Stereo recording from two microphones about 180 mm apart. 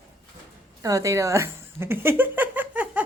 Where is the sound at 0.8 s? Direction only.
20° right (ahead or behind).